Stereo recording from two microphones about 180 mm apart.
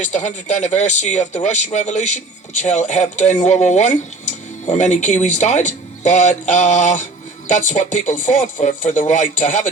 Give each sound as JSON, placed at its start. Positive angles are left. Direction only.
{"t": 0.1, "sound": "speech", "side_deg": 40}